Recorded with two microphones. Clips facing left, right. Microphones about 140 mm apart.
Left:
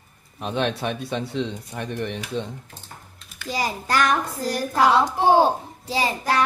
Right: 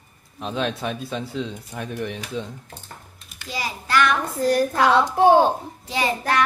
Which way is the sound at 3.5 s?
45° left (ahead or behind).